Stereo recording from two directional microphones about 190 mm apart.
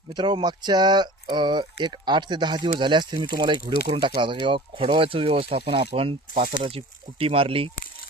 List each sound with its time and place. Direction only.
0.1 s speech: 25° right (ahead or behind)